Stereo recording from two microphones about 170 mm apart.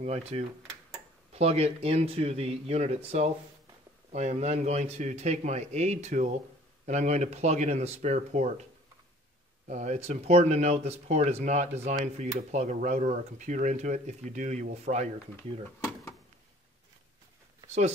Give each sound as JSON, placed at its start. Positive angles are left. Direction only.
{"t": 0.0, "sound": "speech", "side_deg": -40}
{"t": 9.7, "sound": "speech", "side_deg": -45}
{"t": 17.6, "sound": "speech", "side_deg": -40}